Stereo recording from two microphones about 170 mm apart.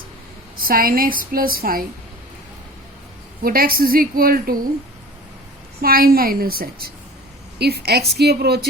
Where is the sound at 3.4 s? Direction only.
60° right (ahead or behind).